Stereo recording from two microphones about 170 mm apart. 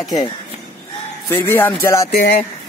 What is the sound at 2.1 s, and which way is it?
Speech, 65° left (ahead or behind).